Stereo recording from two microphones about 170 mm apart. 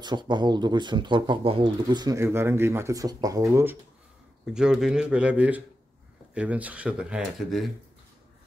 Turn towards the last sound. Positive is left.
turn(degrees=0)  # may be behind; listen again after turning